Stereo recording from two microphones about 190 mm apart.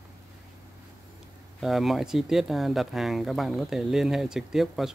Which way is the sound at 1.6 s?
Centre (ahead or behind).